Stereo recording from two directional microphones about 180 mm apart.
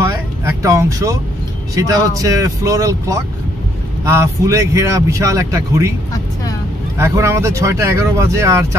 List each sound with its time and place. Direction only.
0.0 s a sound: 15° right (ahead or behind)
1.8 s speech: 20° right (ahead or behind)
7.0 s speech: 15° right (ahead or behind)